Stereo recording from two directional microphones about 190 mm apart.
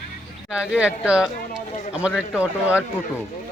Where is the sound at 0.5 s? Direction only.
5° right (ahead or behind).